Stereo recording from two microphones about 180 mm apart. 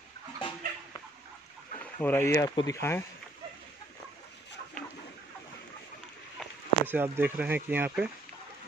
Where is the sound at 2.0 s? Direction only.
15° left (ahead or behind).